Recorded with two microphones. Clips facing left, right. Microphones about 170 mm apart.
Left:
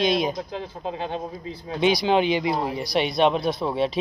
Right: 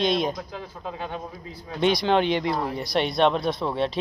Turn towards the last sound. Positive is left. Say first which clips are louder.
# left 2 dB
turn(degrees=5)  # may be behind; listen again after turning